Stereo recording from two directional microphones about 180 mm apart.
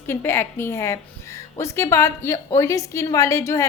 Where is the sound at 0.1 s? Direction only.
15° left (ahead or behind).